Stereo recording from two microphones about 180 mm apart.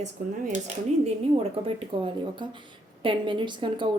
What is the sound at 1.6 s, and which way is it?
A woman's voice, 30° right (ahead or behind).